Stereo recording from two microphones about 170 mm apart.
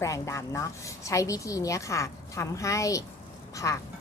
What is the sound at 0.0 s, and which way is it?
A woman's voice, 20° left (ahead or behind).